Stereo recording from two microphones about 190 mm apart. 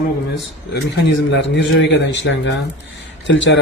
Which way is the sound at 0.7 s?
65° left (ahead or behind).